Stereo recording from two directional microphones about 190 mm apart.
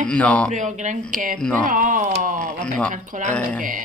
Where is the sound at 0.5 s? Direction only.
40° right (ahead or behind).